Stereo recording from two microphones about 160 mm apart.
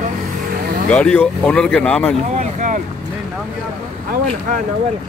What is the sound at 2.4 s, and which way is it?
Vehicle, 50° right (ahead or behind).